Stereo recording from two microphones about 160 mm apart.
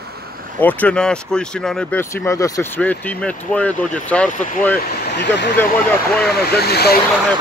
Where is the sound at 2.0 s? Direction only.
20° left (ahead or behind).